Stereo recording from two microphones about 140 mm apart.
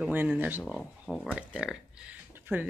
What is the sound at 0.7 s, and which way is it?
Speech, centre (ahead or behind).